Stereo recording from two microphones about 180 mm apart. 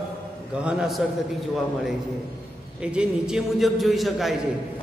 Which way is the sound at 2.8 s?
5° right (ahead or behind).